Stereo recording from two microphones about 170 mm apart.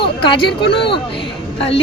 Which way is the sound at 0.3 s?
30° left (ahead or behind).